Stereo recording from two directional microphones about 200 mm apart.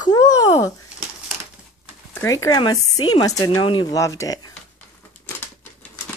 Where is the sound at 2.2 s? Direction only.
15° left (ahead or behind).